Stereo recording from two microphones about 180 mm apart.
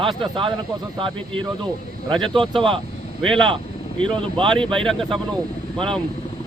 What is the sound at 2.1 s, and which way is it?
Speech, centre (ahead or behind).